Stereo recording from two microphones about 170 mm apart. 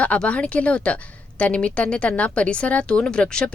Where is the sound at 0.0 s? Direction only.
10° left (ahead or behind).